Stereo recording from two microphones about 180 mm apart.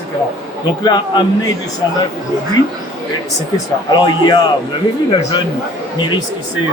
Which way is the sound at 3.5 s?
25° left (ahead or behind).